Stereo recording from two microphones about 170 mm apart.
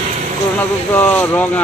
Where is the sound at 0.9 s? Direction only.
10° left (ahead or behind).